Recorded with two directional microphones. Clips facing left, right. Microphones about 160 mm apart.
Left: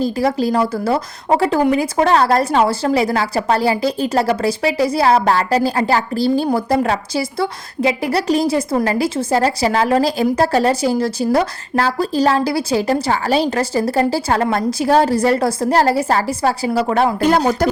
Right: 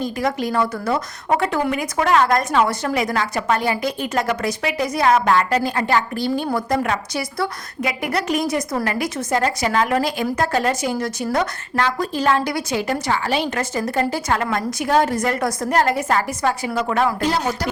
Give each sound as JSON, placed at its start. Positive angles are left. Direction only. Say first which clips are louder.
{"t": 0.0, "sound": "speech", "louder": "left 5 dB", "side_deg": 30}